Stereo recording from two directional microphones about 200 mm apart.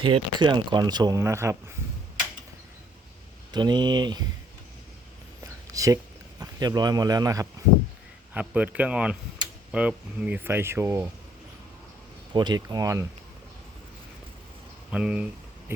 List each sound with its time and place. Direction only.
0.0 s speech: 25° right (ahead or behind)
3.5 s speech: 20° right (ahead or behind)
5.4 s a sound: 15° right (ahead or behind)
6.4 s speech: 20° right (ahead or behind)
8.3 s speech: 5° right (ahead or behind)
12.3 s speech: 20° right (ahead or behind)
14.8 s speech: 5° right (ahead or behind)